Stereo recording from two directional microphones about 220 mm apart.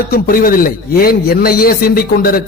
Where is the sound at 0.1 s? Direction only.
40° left (ahead or behind).